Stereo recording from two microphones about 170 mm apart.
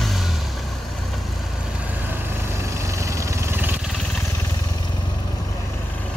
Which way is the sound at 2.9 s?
20° right (ahead or behind).